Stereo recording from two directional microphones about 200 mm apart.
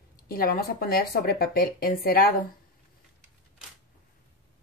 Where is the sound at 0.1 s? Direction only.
45° left (ahead or behind).